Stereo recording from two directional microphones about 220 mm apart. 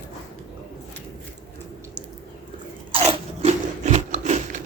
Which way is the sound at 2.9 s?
30° right (ahead or behind).